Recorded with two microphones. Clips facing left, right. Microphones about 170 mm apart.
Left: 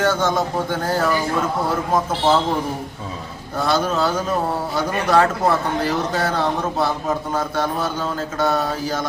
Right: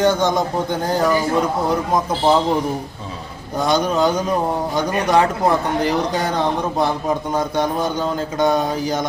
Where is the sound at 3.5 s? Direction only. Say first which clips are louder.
Right 2 dB; 15° right (ahead or behind).